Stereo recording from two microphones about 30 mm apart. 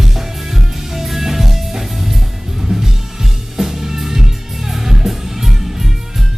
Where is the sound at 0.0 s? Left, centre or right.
Centre.